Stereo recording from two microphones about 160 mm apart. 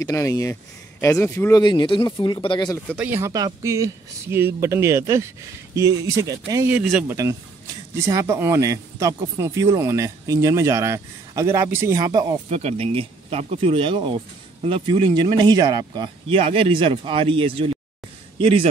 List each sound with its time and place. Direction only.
0.0 s speech: 20° left (ahead or behind)
3.0 s speech: 15° right (ahead or behind)
6.7 s speech: 5° right (ahead or behind)
8.1 s speech: 20° right (ahead or behind)
12.4 s speech: 45° right (ahead or behind)